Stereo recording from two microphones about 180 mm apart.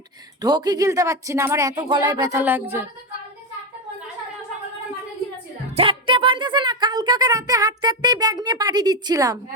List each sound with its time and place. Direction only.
0.4 s speech: 20° right (ahead or behind)
2.4 s a woman's voice: 10° right (ahead or behind)
5.7 s speech: 30° right (ahead or behind)